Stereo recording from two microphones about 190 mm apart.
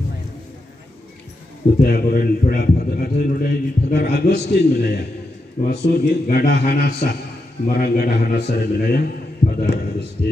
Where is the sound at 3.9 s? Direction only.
55° left (ahead or behind).